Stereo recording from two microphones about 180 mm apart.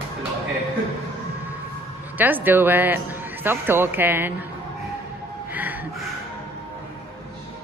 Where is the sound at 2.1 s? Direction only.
10° right (ahead or behind).